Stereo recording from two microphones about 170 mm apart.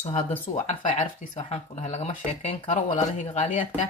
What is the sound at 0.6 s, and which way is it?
Speech, 40° left (ahead or behind).